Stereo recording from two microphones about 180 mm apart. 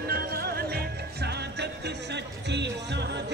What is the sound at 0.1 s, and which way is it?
Music, 60° right (ahead or behind).